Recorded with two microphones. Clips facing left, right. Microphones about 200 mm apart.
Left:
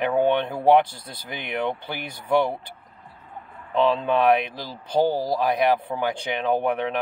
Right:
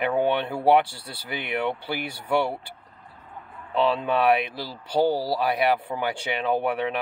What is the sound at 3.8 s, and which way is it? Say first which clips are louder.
Speech: left 2 dB; 10° right (ahead or behind).